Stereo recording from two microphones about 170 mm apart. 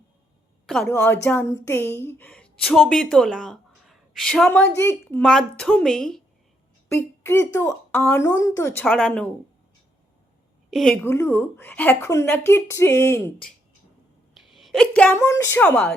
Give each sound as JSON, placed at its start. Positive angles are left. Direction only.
{"t": 0.9, "sound": "a woman's voice", "side_deg": 15}
{"t": 4.8, "sound": "a woman's voice", "side_deg": 15}
{"t": 5.2, "sound": "a woman's voice", "side_deg": 0}
{"t": 7.2, "sound": "a woman's voice", "side_deg": 15}
{"t": 10.7, "sound": "a woman's voice", "side_deg": 0}
{"t": 11.1, "sound": "a woman's voice", "side_deg": 15}
{"t": 14.3, "sound": "a sound", "side_deg": 0}
{"t": 15.2, "sound": "a woman's voice", "side_deg": 15}